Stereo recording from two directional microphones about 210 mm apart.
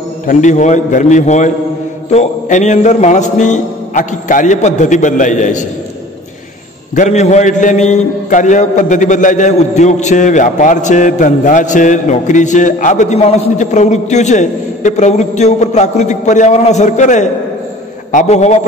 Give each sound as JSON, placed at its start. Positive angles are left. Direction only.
{"t": 0.3, "sound": "a man's voice", "side_deg": 35}
{"t": 7.0, "sound": "a man's voice", "side_deg": 35}